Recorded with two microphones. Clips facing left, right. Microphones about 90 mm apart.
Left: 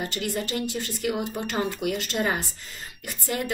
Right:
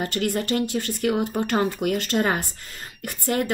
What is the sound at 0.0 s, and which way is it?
A woman's voice, 50° right (ahead or behind).